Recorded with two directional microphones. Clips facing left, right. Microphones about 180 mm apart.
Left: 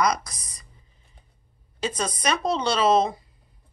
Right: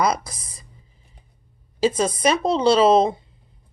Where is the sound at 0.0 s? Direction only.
30° right (ahead or behind).